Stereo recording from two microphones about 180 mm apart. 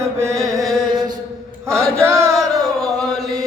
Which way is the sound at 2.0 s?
15° right (ahead or behind).